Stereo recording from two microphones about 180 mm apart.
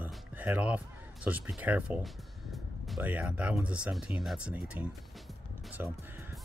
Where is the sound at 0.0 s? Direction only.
10° right (ahead or behind).